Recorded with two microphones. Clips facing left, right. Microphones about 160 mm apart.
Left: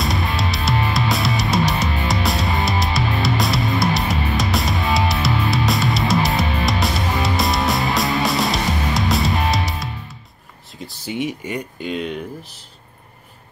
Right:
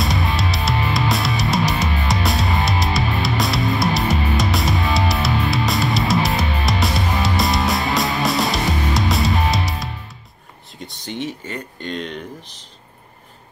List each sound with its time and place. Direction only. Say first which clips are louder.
0.0 s music: right 1 dB; centre (ahead or behind)
10.8 s speech: left 3 dB; 5° left (ahead or behind)